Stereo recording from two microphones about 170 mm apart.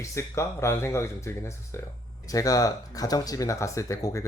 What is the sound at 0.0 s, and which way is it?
Speech, 15° left (ahead or behind).